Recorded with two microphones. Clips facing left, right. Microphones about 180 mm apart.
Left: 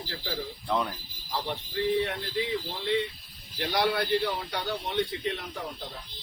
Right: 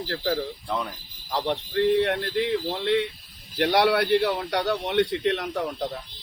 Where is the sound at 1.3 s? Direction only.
65° right (ahead or behind).